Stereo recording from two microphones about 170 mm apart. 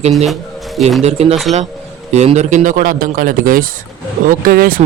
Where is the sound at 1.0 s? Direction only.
40° right (ahead or behind).